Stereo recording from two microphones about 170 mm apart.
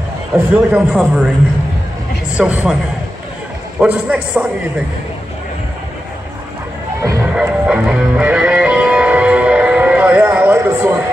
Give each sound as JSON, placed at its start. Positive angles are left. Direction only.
{"t": 0.3, "sound": "a man's voice", "side_deg": -5}
{"t": 2.3, "sound": "speech", "side_deg": -5}
{"t": 3.8, "sound": "a man's voice", "side_deg": -10}
{"t": 7.0, "sound": "music", "side_deg": -15}
{"t": 7.3, "sound": "music", "side_deg": -5}